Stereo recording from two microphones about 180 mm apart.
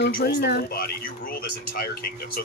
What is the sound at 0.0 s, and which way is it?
Speech, 70° left (ahead or behind).